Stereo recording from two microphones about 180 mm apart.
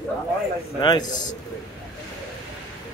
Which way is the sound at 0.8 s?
25° left (ahead or behind).